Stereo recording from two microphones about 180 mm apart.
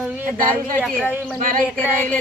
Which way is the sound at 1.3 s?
50° right (ahead or behind).